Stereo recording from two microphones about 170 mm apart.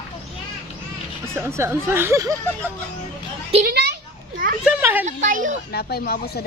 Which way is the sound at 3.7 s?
65° right (ahead or behind).